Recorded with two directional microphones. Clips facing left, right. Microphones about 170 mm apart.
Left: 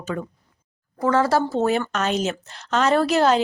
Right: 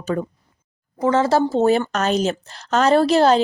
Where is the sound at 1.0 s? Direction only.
20° right (ahead or behind).